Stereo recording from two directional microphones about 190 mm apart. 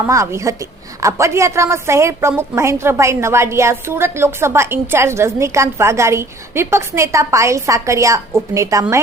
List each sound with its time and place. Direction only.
0.0 s a woman's voice: 15° right (ahead or behind)